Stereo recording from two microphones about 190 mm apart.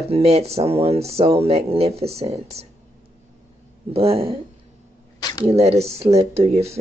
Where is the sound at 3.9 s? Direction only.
30° right (ahead or behind).